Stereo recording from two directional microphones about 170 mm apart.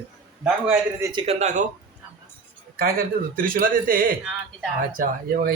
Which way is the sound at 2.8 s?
60° right (ahead or behind).